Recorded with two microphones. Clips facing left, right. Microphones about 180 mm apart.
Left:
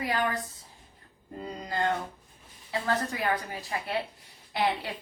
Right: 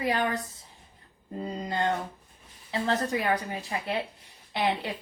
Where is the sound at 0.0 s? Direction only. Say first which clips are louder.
Right 2 dB; 25° right (ahead or behind).